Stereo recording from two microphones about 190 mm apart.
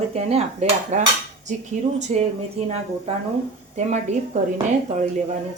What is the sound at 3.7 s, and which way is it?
Speech, 35° right (ahead or behind).